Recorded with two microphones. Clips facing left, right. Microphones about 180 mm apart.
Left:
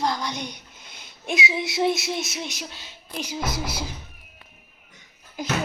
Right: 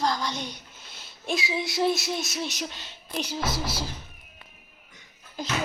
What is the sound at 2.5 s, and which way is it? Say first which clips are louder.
Speech: right 2 dB; 10° left (ahead or behind).